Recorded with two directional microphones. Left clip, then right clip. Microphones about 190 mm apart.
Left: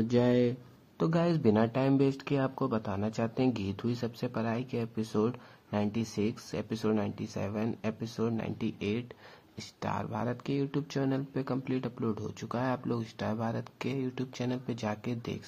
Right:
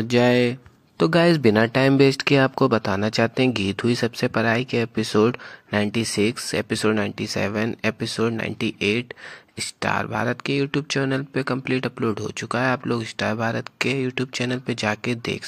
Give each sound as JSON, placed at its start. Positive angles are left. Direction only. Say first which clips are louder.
{"t": 0.1, "sound": "speech", "louder": "right 10 dB", "side_deg": -20}